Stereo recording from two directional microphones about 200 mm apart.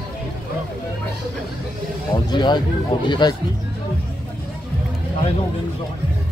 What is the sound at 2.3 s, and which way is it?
Speech, 20° left (ahead or behind).